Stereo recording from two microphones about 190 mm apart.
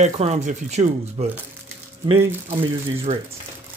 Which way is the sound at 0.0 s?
40° right (ahead or behind).